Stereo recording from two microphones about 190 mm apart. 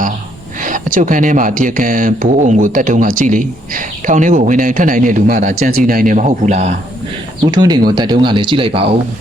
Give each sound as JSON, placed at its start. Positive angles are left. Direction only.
{"t": 0.6, "sound": "speech", "side_deg": -45}
{"t": 7.5, "sound": "speech", "side_deg": -20}